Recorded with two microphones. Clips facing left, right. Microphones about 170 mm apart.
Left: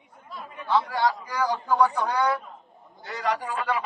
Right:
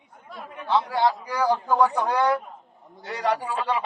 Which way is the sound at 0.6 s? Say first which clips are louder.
Right 2 dB; 25° right (ahead or behind).